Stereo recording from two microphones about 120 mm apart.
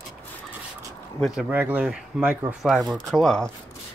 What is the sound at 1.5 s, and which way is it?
Speech, 15° right (ahead or behind).